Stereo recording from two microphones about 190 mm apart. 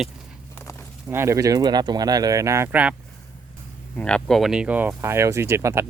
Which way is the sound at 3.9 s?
5° left (ahead or behind).